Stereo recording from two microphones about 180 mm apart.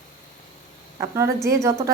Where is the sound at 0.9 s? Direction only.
15° right (ahead or behind).